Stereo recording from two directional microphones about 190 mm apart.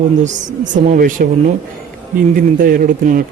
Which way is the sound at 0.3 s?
40° right (ahead or behind).